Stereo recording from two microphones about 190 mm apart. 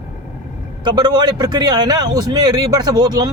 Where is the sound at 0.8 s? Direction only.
25° right (ahead or behind).